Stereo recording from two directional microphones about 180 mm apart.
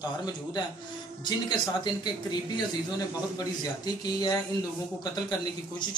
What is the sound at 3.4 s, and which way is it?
Speech, 20° left (ahead or behind).